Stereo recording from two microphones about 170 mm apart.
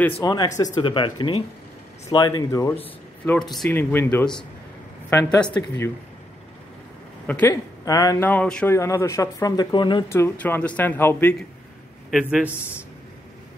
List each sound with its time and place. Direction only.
0.1 s speech: 25° left (ahead or behind)
7.2 s speech: 10° left (ahead or behind)
7.8 s speech: 20° left (ahead or behind)
8.7 s speech: 15° left (ahead or behind)
10.0 s speech: 15° left (ahead or behind)
12.1 s speech: 5° right (ahead or behind)
12.4 s speech: 15° left (ahead or behind)